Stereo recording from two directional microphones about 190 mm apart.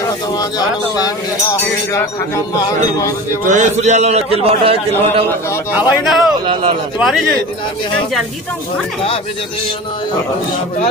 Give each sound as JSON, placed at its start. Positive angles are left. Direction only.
{"t": 0.4, "sound": "speech", "side_deg": 20}
{"t": 3.4, "sound": "a man's voice", "side_deg": -40}
{"t": 5.7, "sound": "a man's voice", "side_deg": -5}
{"t": 6.4, "sound": "speech", "side_deg": -25}
{"t": 7.0, "sound": "a man's voice", "side_deg": 0}